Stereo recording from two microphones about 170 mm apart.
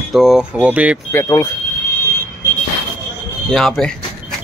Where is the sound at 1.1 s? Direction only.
15° left (ahead or behind).